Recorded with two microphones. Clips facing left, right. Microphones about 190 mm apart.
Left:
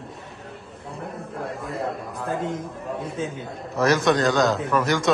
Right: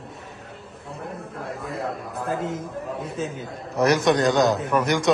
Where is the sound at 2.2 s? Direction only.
Centre (ahead or behind).